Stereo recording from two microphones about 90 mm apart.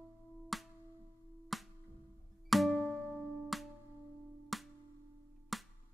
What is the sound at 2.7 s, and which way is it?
Music, 15° left (ahead or behind).